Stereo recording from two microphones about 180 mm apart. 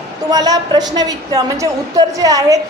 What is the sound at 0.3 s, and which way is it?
A woman's voice, 20° right (ahead or behind).